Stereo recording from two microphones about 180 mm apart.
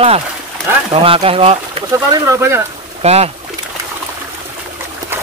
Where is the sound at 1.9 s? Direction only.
20° right (ahead or behind).